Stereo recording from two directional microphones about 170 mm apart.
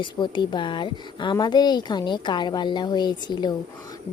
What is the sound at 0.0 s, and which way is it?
Speech, 25° left (ahead or behind).